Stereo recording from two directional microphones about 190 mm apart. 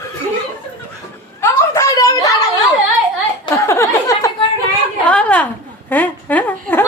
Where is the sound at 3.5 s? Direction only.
15° left (ahead or behind).